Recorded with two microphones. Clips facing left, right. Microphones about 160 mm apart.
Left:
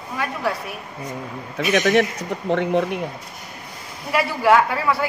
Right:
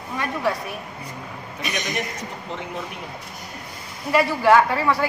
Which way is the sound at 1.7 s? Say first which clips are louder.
Left 12 dB; 70° left (ahead or behind).